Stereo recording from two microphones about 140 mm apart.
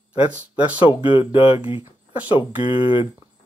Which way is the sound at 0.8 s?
40° left (ahead or behind).